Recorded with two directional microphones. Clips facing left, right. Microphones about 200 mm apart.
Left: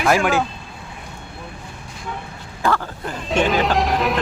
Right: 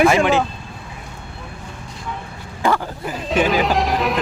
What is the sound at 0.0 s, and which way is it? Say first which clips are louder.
Speech: right 3 dB; centre (ahead or behind).